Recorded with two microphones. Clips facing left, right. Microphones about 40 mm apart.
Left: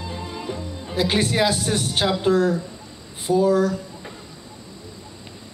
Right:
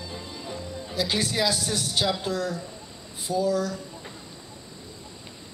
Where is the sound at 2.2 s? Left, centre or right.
Left.